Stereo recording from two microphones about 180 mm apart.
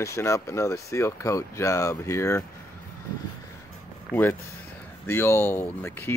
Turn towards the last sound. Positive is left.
turn(degrees=15)  # may be behind; listen again after turning